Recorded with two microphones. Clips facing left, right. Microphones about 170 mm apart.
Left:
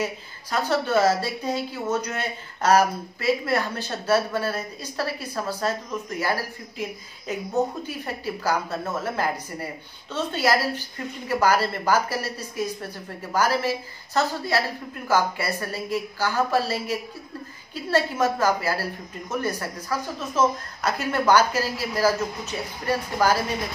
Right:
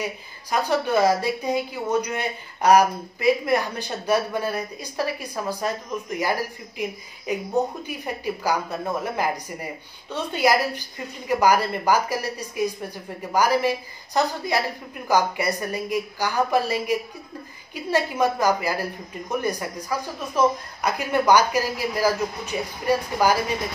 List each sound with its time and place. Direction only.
0.0 s a woman's voice: 15° right (ahead or behind)